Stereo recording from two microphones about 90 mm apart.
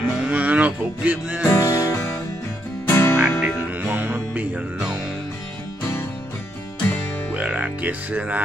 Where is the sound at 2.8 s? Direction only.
25° left (ahead or behind).